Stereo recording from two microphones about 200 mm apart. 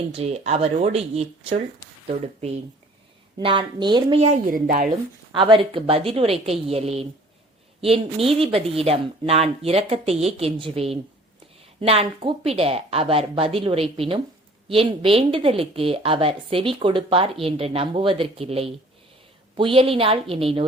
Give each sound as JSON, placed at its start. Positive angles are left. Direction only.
{"t": 0.1, "sound": "a woman's voice", "side_deg": -30}
{"t": 5.3, "sound": "a woman's voice", "side_deg": -25}